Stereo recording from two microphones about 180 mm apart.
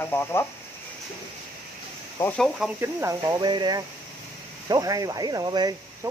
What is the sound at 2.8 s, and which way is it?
Speech, 15° right (ahead or behind).